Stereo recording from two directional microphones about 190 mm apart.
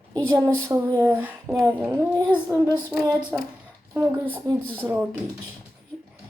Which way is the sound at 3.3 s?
10° right (ahead or behind).